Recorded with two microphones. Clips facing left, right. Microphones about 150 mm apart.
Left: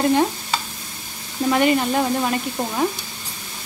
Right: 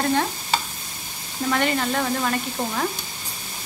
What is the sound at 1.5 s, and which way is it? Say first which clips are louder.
Speech: left 5 dB; 15° left (ahead or behind).